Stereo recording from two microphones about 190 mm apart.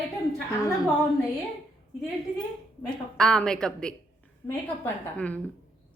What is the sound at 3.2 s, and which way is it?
Speech, 5° left (ahead or behind).